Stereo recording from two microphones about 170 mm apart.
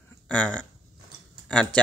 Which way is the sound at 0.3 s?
5° left (ahead or behind).